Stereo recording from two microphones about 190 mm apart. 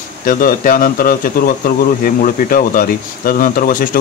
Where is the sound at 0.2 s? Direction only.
45° left (ahead or behind).